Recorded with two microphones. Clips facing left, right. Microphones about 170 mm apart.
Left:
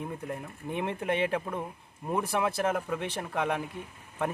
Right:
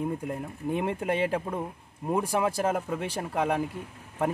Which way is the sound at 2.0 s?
10° right (ahead or behind).